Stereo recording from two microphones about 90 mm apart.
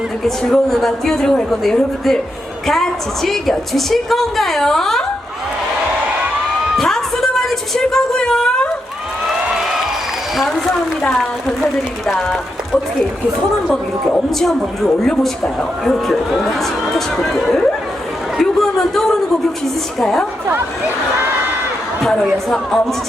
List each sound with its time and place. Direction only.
0.3 s a woman's voice: 5° left (ahead or behind)
6.7 s a sound: 5° left (ahead or behind)
10.3 s a woman's voice: centre (ahead or behind)
14.3 s a woman's voice: 5° left (ahead or behind)
18.3 s a sound: 5° left (ahead or behind)
19.6 s a woman's voice: 5° left (ahead or behind)
20.5 s speech: 25° right (ahead or behind)
22.0 s a woman's voice: 5° left (ahead or behind)